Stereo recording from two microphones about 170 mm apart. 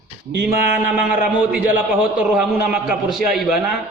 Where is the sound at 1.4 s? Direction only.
10° right (ahead or behind).